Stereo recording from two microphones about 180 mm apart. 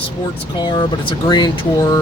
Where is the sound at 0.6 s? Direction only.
25° left (ahead or behind).